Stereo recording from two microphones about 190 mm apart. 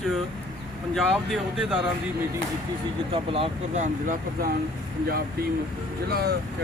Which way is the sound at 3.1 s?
30° right (ahead or behind).